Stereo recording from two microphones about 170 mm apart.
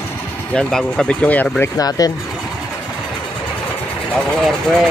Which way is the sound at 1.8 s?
20° left (ahead or behind).